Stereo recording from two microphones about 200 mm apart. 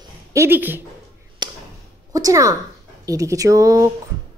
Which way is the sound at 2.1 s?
15° right (ahead or behind).